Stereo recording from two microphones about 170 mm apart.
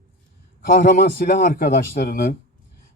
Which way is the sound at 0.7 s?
55° left (ahead or behind).